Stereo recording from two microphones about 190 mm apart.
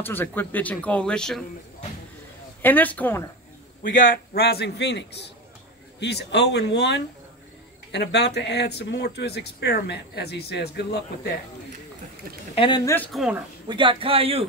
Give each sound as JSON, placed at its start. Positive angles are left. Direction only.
{"t": 0.0, "sound": "speech", "side_deg": 10}
{"t": 2.6, "sound": "speech", "side_deg": 10}
{"t": 3.9, "sound": "speech", "side_deg": 45}
{"t": 12.5, "sound": "speech", "side_deg": 25}
{"t": 12.9, "sound": "speech", "side_deg": 10}
{"t": 13.7, "sound": "a man's voice", "side_deg": -25}